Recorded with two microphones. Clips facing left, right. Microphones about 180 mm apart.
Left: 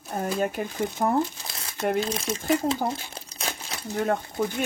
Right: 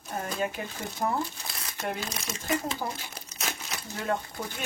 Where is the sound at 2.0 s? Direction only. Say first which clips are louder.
Left 8 dB; 30° left (ahead or behind).